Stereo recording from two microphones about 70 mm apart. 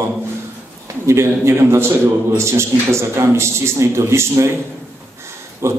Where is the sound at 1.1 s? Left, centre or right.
Right.